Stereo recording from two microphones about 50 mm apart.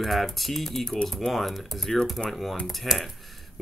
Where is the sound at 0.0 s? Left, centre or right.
Centre.